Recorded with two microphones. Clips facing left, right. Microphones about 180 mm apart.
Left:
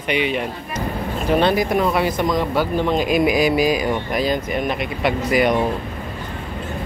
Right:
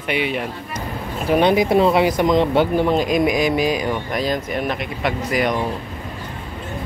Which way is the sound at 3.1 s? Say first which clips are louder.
Left 1 dB; 5° left (ahead or behind).